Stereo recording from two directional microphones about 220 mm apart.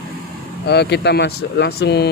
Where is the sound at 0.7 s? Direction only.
50° left (ahead or behind).